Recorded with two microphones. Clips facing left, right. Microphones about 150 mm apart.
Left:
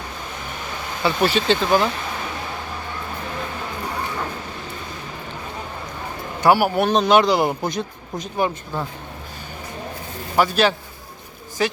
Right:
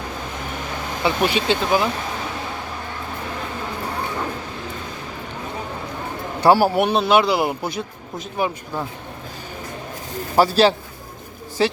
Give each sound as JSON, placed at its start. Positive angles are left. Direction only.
{"t": 1.0, "sound": "speech", "side_deg": -15}
{"t": 6.4, "sound": "speech", "side_deg": -35}
{"t": 6.9, "sound": "speech", "side_deg": -5}
{"t": 10.3, "sound": "a man's voice", "side_deg": -35}